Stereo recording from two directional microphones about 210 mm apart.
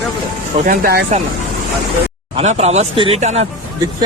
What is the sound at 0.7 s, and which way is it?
Speech, 45° right (ahead or behind).